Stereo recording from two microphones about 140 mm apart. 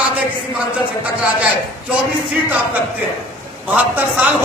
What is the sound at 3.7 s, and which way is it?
Speech, 10° right (ahead or behind).